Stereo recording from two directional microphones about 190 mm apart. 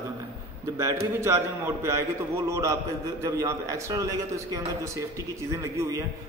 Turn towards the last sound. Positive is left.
turn(degrees=-15)  # may be behind; listen again after turning